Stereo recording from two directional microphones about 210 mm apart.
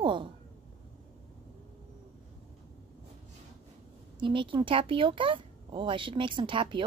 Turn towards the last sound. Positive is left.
turn(degrees=-25)  # may be behind; listen again after turning